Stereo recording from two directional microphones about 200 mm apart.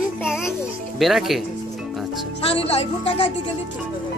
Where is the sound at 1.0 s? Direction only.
Centre (ahead or behind).